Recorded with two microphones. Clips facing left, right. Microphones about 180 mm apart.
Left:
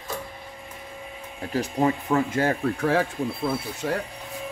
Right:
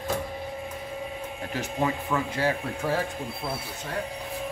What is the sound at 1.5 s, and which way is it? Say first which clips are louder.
Speech: left 5 dB; 40° left (ahead or behind).